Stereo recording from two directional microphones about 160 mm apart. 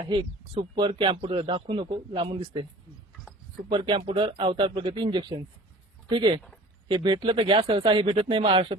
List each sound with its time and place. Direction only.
0.1 s speech: 30° right (ahead or behind)
3.7 s speech: 30° right (ahead or behind)